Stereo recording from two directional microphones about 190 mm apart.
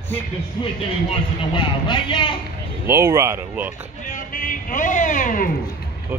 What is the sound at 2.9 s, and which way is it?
Speech, 15° right (ahead or behind).